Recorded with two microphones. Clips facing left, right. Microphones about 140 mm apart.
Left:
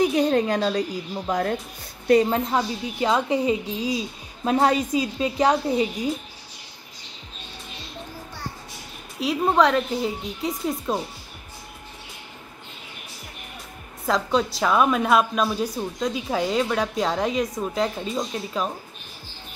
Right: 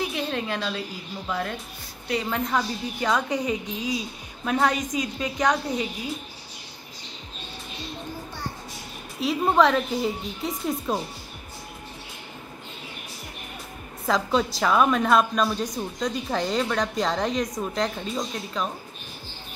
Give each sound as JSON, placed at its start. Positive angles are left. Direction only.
{"t": 0.0, "sound": "a woman's voice", "side_deg": 40}
{"t": 2.2, "sound": "a woman's voice", "side_deg": 30}
{"t": 9.2, "sound": "a woman's voice", "side_deg": 0}
{"t": 14.0, "sound": "a woman's voice", "side_deg": 0}